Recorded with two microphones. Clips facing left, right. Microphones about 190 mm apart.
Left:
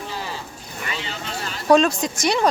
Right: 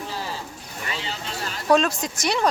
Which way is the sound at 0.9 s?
35° right (ahead or behind).